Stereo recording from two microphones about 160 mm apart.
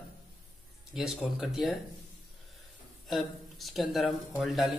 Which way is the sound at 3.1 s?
Centre (ahead or behind).